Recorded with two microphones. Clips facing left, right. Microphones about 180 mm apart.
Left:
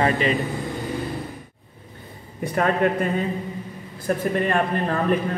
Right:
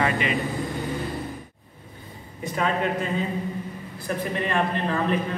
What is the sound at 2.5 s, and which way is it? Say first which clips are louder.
Speech: left 4 dB; 55° left (ahead or behind).